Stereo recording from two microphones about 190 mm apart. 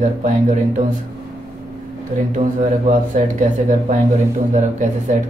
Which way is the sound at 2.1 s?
40° right (ahead or behind).